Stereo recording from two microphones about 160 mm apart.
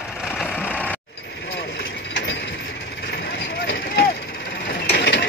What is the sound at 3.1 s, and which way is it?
Vehicle, 80° left.